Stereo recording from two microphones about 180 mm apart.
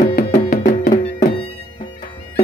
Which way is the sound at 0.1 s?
50° left (ahead or behind).